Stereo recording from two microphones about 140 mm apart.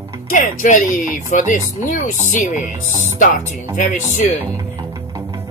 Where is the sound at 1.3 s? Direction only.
65° left (ahead or behind).